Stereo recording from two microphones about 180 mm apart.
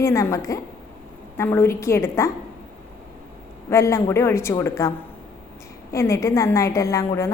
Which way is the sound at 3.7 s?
15° left (ahead or behind).